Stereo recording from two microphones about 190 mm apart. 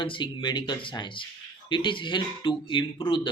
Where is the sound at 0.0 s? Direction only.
25° left (ahead or behind).